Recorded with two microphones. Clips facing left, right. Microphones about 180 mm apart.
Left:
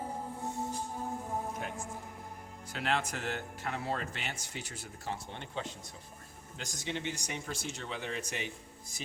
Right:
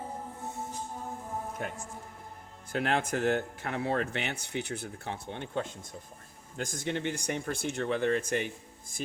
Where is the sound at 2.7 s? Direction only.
50° right (ahead or behind).